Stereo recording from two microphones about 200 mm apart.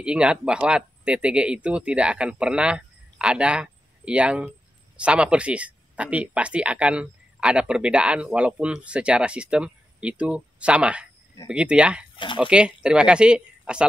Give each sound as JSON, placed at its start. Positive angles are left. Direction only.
{"t": 0.0, "sound": "speech", "side_deg": -5}